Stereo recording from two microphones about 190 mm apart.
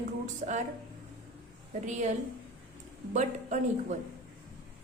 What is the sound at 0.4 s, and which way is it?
Speech, 45° right (ahead or behind).